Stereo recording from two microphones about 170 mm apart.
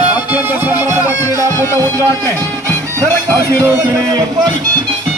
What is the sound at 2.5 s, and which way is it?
Music, 20° right (ahead or behind).